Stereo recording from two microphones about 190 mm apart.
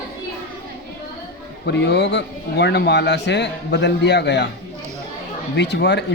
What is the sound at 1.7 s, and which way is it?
A man's voice, 65° left (ahead or behind).